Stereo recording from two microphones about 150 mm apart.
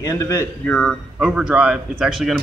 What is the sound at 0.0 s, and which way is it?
Speech, 25° left (ahead or behind).